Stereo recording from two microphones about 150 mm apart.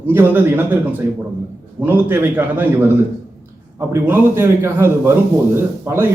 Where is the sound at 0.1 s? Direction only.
15° right (ahead or behind).